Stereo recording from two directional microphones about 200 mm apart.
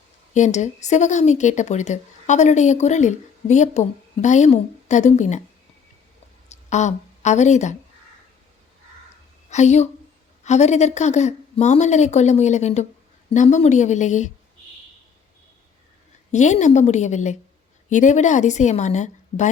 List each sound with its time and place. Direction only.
0.3 s speech: 35° left (ahead or behind)
6.7 s speech: 35° left (ahead or behind)
9.5 s speech: 35° left (ahead or behind)
16.3 s speech: 35° left (ahead or behind)